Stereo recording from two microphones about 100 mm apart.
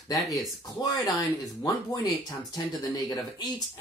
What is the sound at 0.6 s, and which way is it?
Speech, 40° left (ahead or behind).